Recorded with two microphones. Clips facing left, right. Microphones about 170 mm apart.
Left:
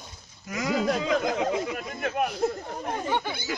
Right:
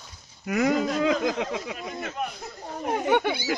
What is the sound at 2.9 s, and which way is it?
Speech, 65° right (ahead or behind).